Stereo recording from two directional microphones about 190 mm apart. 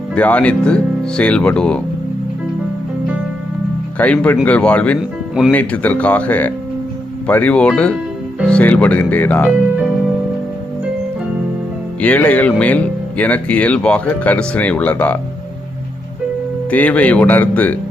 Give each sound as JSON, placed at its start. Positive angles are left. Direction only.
{"t": 0.1, "sound": "speech", "side_deg": 5}
{"t": 3.9, "sound": "speech", "side_deg": 5}
{"t": 4.9, "sound": "music", "side_deg": -5}
{"t": 5.5, "sound": "speech", "side_deg": 10}
{"t": 11.9, "sound": "speech", "side_deg": 5}
{"t": 16.6, "sound": "speech", "side_deg": 5}